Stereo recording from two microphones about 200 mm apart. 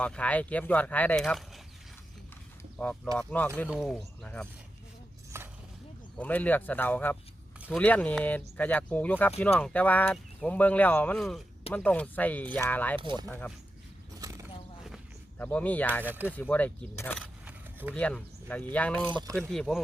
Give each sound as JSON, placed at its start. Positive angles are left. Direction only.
{"t": 0.0, "sound": "speech", "side_deg": 5}
{"t": 2.7, "sound": "speech", "side_deg": 5}
{"t": 5.3, "sound": "a sound", "side_deg": -10}
{"t": 6.1, "sound": "speech", "side_deg": 10}
{"t": 13.0, "sound": "speech", "side_deg": -25}
{"t": 13.2, "sound": "speech", "side_deg": 10}
{"t": 14.2, "sound": "a sound", "side_deg": -15}
{"t": 15.4, "sound": "speech", "side_deg": 10}
{"t": 16.0, "sound": "speech", "side_deg": -10}
{"t": 16.3, "sound": "speech", "side_deg": 5}
{"t": 17.4, "sound": "keys jangling", "side_deg": -10}
{"t": 17.9, "sound": "speech", "side_deg": 5}
{"t": 19.0, "sound": "speech", "side_deg": -20}
{"t": 19.4, "sound": "speech", "side_deg": 0}